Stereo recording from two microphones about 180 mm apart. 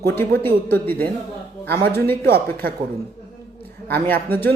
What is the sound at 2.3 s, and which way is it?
Speech, 55° right (ahead or behind).